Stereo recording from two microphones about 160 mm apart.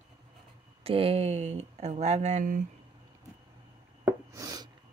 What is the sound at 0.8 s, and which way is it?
Speech, 35° right (ahead or behind).